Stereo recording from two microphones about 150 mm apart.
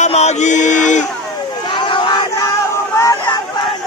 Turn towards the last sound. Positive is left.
turn(degrees=20)  # may be behind; listen again after turning